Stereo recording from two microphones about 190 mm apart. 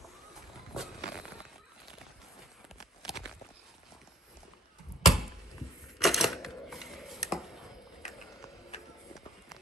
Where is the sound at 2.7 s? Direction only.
Centre (ahead or behind).